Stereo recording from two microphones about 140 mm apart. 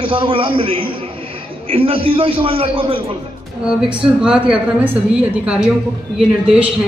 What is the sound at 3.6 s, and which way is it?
Speech, 5° right (ahead or behind).